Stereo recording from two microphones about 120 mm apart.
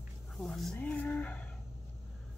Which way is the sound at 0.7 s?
15° left (ahead or behind).